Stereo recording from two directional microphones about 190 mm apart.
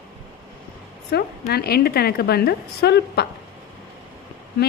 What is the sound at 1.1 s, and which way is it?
A woman's voice, 55° left (ahead or behind).